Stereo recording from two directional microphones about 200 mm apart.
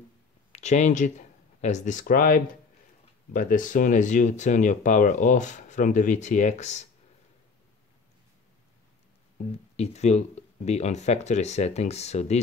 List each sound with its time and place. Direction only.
0.5 s speech: 35° left (ahead or behind)
9.5 s speech: 30° left (ahead or behind)